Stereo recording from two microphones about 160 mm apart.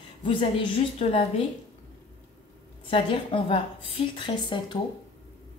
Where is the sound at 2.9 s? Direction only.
35° left (ahead or behind).